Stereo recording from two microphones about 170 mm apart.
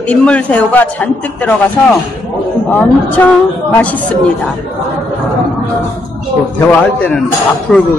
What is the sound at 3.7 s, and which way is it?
Speech, 10° left (ahead or behind).